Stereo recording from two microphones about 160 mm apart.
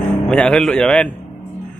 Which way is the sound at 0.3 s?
Centre (ahead or behind).